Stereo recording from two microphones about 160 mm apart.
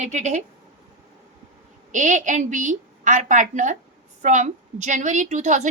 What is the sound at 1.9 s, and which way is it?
A woman's voice, 50° right (ahead or behind).